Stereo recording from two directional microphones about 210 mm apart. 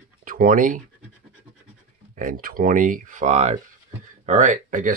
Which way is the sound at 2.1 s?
40° right (ahead or behind).